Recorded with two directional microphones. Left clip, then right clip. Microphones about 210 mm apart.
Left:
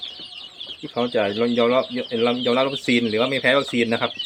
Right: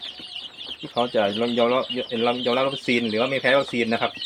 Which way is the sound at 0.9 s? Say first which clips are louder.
Even; 15° left (ahead or behind).